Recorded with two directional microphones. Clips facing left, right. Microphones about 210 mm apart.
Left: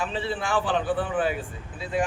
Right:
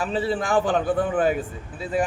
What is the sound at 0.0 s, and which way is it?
A man's voice, 40° right (ahead or behind).